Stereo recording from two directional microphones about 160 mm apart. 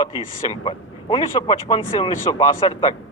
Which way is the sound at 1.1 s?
25° left (ahead or behind).